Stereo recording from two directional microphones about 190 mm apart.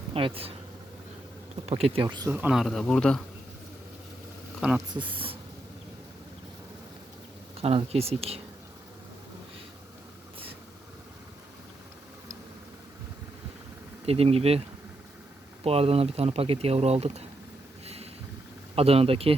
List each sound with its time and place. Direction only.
0.1 s speech: 30° right (ahead or behind)
1.6 s speech: 30° right (ahead or behind)
2.3 s speech: 5° right (ahead or behind)
4.6 s speech: 5° right (ahead or behind)
4.9 s speech: 25° right (ahead or behind)
7.5 s speech: 30° right (ahead or behind)
14.0 s speech: 30° right (ahead or behind)
15.6 s speech: 30° right (ahead or behind)
17.8 s a sound: 35° right (ahead or behind)
18.8 s speech: 30° right (ahead or behind)